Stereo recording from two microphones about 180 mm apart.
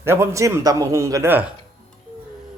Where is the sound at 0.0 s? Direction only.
15° right (ahead or behind).